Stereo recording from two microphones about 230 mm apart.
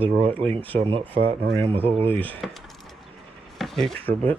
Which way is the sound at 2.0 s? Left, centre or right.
Centre.